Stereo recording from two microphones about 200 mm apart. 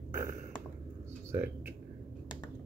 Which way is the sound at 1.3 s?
10° right (ahead or behind).